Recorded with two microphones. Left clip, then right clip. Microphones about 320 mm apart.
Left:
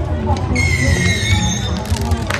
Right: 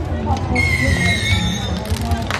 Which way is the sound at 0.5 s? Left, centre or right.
Right.